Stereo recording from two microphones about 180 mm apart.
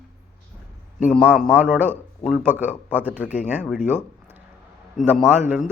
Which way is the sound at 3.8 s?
10° right (ahead or behind).